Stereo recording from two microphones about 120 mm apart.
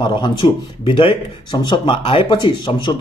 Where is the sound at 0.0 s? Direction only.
40° left (ahead or behind).